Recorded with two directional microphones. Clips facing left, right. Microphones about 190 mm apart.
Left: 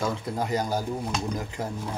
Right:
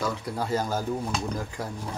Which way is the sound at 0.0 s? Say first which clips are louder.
Left 1 dB; 25° left (ahead or behind).